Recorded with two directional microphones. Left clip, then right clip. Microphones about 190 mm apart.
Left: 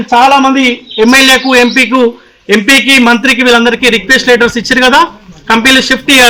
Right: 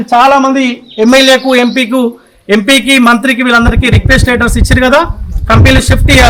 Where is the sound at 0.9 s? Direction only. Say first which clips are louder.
Even; 35° right (ahead or behind).